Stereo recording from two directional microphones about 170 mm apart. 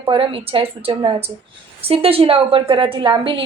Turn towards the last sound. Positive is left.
turn(degrees=-30)  # may be behind; listen again after turning